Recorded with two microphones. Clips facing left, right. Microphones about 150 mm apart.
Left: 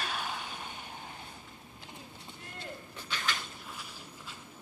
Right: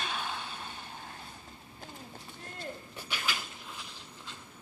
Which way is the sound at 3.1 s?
5° right (ahead or behind).